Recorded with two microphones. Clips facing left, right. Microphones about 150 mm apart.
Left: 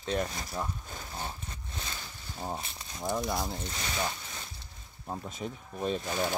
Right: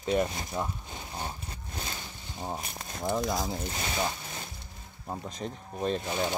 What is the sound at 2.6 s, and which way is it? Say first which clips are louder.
Speech: right 5 dB; 50° right (ahead or behind).